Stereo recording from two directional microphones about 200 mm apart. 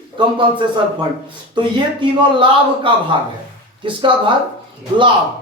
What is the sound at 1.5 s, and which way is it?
Speech, 25° right (ahead or behind).